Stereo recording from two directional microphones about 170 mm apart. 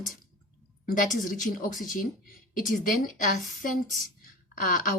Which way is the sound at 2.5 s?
50° left (ahead or behind).